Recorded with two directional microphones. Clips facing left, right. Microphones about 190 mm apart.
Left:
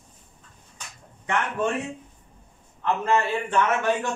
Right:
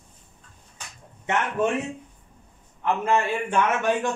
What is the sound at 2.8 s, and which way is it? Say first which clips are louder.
A man's voice: even; 15° right (ahead or behind).